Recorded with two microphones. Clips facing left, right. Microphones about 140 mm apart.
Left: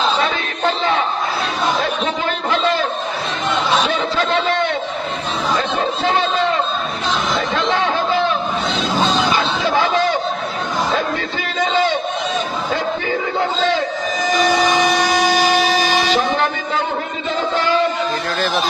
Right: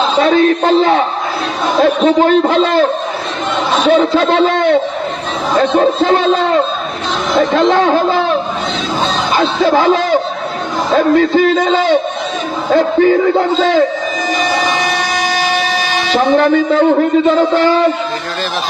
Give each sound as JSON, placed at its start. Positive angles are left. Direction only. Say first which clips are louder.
{"t": 0.2, "sound": "speech", "louder": "right 10 dB", "side_deg": -45}
{"t": 7.3, "sound": "music", "louder": "right 12 dB", "side_deg": -45}
{"t": 9.3, "sound": "yell", "louder": "right 6 dB", "side_deg": -45}
{"t": 10.9, "sound": "speech", "louder": "right 11 dB", "side_deg": -45}
{"t": 16.2, "sound": "speech", "louder": "right 9 dB", "side_deg": -50}